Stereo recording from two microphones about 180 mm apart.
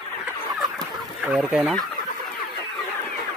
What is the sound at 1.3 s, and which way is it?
Speech, 5° right (ahead or behind).